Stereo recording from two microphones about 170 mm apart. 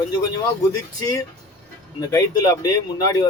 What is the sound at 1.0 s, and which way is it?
Speech, 20° left (ahead or behind).